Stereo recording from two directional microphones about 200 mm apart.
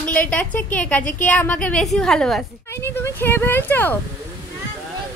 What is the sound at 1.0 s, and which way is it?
Speech, 40° left (ahead or behind).